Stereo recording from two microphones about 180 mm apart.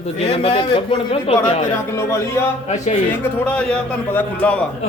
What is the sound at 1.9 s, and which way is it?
A man's voice, 15° left (ahead or behind).